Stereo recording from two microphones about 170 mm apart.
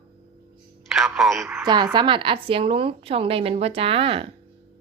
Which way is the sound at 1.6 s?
25° right (ahead or behind).